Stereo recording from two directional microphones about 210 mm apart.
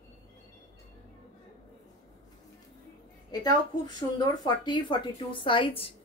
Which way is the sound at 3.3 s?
20° left (ahead or behind).